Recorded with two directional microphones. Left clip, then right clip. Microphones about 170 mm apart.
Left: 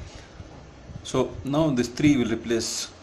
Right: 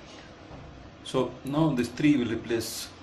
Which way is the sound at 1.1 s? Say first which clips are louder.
Left 3 dB; 40° left (ahead or behind).